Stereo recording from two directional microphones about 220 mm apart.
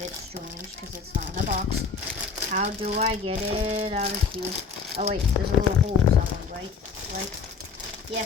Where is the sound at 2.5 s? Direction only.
35° right (ahead or behind).